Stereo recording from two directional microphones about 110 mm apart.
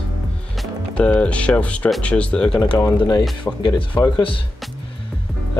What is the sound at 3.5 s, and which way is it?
Speech, 20° left (ahead or behind).